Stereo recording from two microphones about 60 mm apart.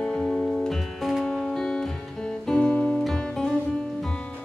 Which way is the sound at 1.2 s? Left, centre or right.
Centre.